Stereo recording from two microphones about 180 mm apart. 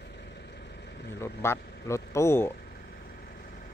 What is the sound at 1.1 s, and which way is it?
Speech, 15° left (ahead or behind).